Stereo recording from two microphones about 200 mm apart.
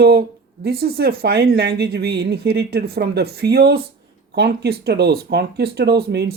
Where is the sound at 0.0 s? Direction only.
50° right (ahead or behind).